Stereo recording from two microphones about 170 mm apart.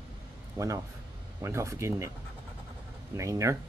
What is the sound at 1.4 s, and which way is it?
Speech, 15° right (ahead or behind).